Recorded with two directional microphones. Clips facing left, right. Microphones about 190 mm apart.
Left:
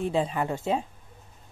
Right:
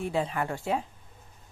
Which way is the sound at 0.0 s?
25° left (ahead or behind).